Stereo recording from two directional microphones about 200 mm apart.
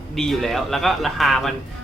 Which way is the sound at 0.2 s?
Centre (ahead or behind).